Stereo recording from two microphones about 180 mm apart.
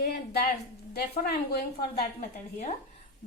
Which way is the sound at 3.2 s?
50° left (ahead or behind).